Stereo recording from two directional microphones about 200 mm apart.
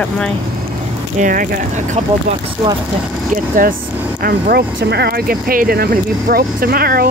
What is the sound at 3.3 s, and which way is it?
Speech, 45° right (ahead or behind).